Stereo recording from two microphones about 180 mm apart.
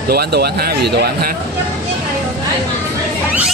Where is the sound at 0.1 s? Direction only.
60° right (ahead or behind).